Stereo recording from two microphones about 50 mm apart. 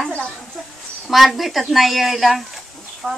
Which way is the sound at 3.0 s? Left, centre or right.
Left.